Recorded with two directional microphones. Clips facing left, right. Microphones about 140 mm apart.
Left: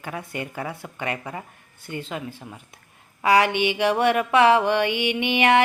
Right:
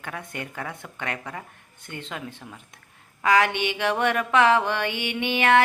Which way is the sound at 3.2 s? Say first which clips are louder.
Left 2 dB; 10° left (ahead or behind).